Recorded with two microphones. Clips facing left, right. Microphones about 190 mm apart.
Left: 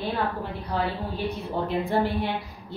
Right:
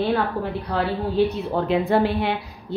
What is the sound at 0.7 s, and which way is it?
Speech, 70° right (ahead or behind).